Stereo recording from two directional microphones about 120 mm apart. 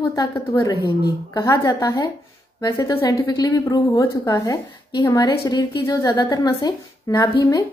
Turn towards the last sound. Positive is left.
turn(degrees=30)  # may be behind; listen again after turning